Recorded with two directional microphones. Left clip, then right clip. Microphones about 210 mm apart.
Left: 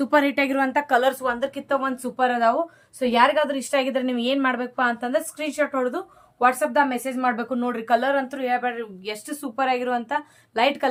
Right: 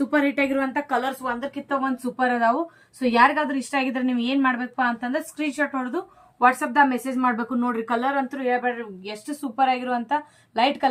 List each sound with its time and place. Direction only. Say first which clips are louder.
0.1 s a woman's voice: left 3 dB; 55° left (ahead or behind)
6.4 s a woman's voice: right 1 dB; 30° left (ahead or behind)